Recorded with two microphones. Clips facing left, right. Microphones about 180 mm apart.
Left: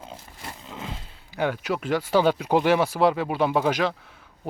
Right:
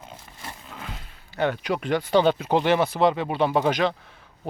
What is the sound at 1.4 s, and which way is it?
Speech, 5° left (ahead or behind).